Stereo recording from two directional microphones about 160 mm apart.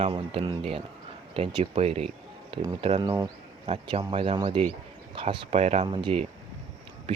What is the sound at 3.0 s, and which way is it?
Speech, 20° right (ahead or behind).